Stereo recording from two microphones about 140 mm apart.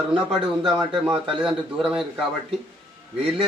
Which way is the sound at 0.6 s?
Centre (ahead or behind).